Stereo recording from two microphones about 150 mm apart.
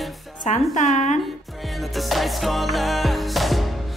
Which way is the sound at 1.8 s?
Centre (ahead or behind).